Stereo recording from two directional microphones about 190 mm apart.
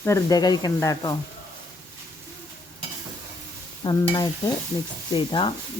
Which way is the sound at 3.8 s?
20° left (ahead or behind).